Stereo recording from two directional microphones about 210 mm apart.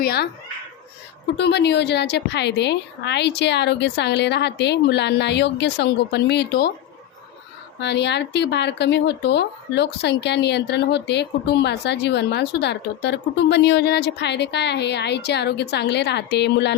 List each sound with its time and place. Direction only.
0.0 s speech: 50° left (ahead or behind)
1.4 s a woman's voice: 55° left (ahead or behind)
7.8 s speech: 55° left (ahead or behind)